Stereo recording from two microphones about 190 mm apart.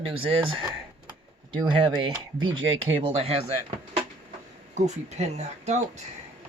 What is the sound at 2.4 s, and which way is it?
Speech, 90° right.